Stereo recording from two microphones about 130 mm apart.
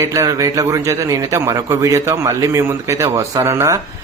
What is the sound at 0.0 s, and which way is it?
Speech, 25° right (ahead or behind).